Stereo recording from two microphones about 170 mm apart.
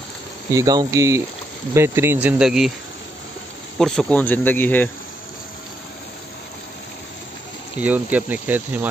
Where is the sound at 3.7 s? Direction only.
Centre (ahead or behind).